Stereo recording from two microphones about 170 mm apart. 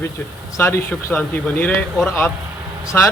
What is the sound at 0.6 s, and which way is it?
Speech, 15° left (ahead or behind).